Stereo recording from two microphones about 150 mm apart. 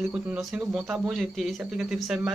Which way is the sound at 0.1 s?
5° right (ahead or behind).